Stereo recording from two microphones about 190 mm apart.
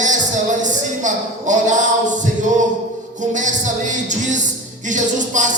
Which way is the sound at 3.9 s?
40° right (ahead or behind).